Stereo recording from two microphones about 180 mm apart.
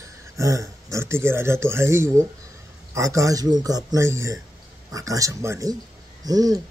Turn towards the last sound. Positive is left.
turn(degrees=-20)  # may be behind; listen again after turning